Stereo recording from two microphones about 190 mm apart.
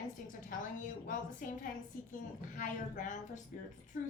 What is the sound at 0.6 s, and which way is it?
A woman's voice, 45° left (ahead or behind).